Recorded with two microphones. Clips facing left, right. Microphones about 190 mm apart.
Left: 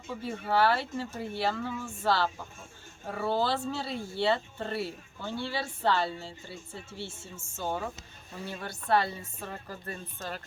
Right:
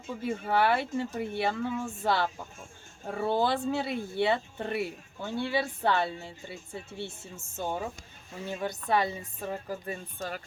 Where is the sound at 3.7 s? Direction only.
20° right (ahead or behind).